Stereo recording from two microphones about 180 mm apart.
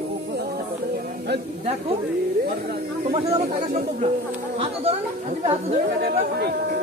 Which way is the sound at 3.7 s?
45° right (ahead or behind).